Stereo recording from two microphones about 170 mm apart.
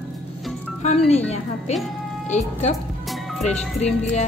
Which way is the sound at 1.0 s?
40° left (ahead or behind).